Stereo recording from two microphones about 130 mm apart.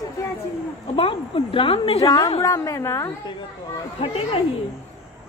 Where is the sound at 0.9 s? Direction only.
45° left (ahead or behind).